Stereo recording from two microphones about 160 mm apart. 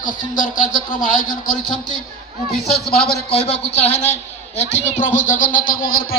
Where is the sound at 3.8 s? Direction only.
45° left (ahead or behind).